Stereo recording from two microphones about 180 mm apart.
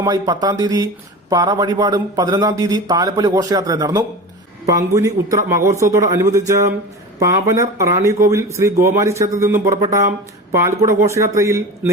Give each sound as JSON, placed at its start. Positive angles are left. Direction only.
{"t": 0.0, "sound": "a man's voice", "side_deg": -20}